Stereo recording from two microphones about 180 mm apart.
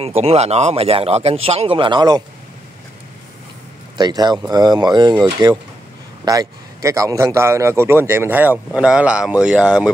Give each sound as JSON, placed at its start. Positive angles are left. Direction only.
{"t": 0.0, "sound": "speech", "side_deg": -35}
{"t": 4.0, "sound": "a man's voice", "side_deg": -20}